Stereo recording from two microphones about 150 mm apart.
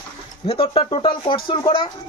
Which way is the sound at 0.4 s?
40° left (ahead or behind).